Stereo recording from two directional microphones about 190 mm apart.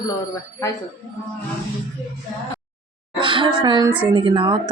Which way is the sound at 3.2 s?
25° right (ahead or behind).